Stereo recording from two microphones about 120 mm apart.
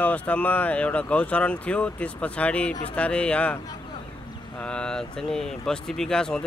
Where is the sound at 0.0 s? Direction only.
10° left (ahead or behind).